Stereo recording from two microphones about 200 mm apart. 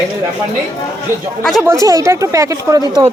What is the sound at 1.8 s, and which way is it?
Speech, 15° right (ahead or behind).